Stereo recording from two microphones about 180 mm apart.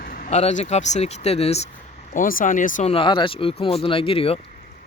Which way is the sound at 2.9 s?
30° left (ahead or behind).